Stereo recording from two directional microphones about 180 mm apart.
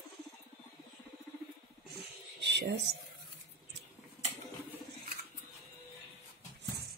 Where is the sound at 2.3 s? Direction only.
70° right (ahead or behind).